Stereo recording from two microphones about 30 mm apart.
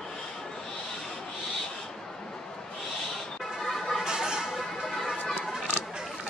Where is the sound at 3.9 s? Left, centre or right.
Right.